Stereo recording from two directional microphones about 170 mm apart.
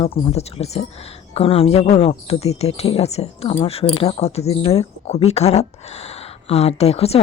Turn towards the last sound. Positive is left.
turn(degrees=35)  # may be behind; listen again after turning